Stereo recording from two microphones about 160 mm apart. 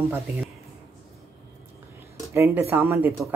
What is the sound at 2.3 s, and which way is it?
Speech, 15° right (ahead or behind).